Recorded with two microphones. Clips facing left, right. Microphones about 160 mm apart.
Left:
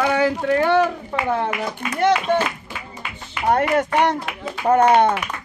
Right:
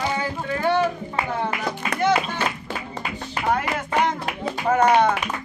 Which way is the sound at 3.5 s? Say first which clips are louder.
Left 5 dB; 65° left (ahead or behind).